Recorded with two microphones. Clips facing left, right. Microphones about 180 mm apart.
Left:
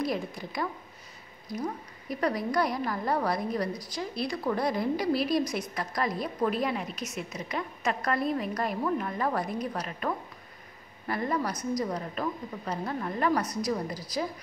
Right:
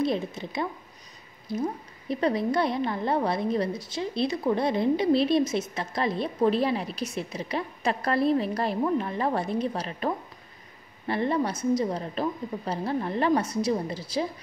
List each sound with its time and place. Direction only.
0.0 s a woman's voice: 25° right (ahead or behind)